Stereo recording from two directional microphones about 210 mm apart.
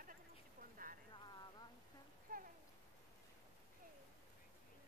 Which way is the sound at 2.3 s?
40° right (ahead or behind).